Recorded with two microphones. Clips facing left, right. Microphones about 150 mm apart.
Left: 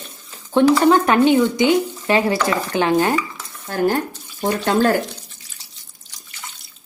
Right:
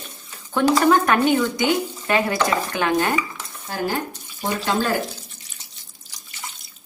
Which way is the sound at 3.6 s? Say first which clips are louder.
Left 6 dB; 50° left (ahead or behind).